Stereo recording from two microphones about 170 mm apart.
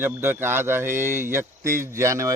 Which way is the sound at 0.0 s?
15° right (ahead or behind).